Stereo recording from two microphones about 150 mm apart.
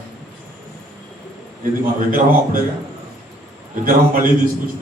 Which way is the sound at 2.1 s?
70° right (ahead or behind).